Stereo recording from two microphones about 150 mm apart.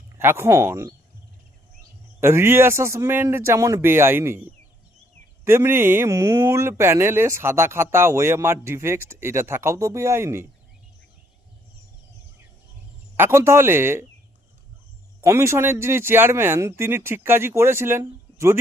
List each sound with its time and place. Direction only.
0.2 s speech: 15° right (ahead or behind)
2.2 s speech: 15° right (ahead or behind)
5.5 s speech: 15° right (ahead or behind)
13.1 s speech: 15° right (ahead or behind)
15.2 s speech: 20° right (ahead or behind)